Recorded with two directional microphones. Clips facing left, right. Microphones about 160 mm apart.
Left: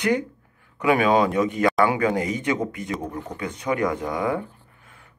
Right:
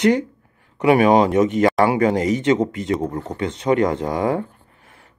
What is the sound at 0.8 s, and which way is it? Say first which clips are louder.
Speech: right 5 dB; 20° right (ahead or behind).